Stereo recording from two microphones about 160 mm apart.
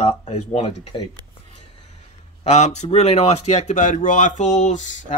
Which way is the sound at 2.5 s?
45° left (ahead or behind).